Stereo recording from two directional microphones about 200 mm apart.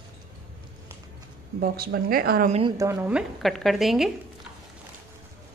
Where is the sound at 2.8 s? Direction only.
10° right (ahead or behind).